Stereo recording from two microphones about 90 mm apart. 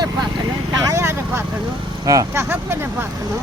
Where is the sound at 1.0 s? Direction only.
25° right (ahead or behind).